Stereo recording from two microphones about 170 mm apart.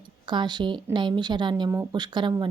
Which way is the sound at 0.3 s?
25° right (ahead or behind).